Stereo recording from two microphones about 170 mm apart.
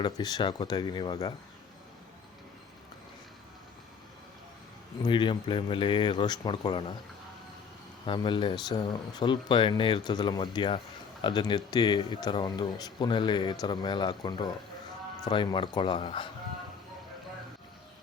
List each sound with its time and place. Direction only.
0.0 s speech: 25° left (ahead or behind)
5.0 s speech: 30° left (ahead or behind)
8.0 s speech: 30° left (ahead or behind)